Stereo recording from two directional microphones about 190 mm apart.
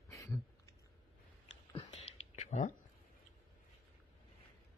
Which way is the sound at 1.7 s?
30° left (ahead or behind).